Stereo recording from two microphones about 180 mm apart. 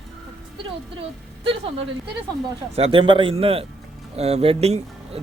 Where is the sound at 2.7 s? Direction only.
30° right (ahead or behind).